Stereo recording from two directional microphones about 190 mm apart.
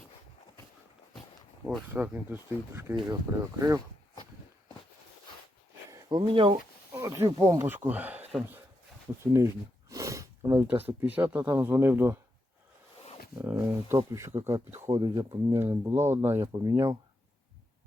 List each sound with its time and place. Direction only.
1.6 s speech: 5° right (ahead or behind)
5.9 s speech: 20° right (ahead or behind)
6.9 s speech: 15° right (ahead or behind)
9.9 s a sound: 15° right (ahead or behind)
11.0 s speech: 10° right (ahead or behind)
13.4 s speech: 10° right (ahead or behind)